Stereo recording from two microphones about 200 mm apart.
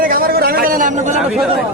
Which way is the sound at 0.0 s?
45° right (ahead or behind).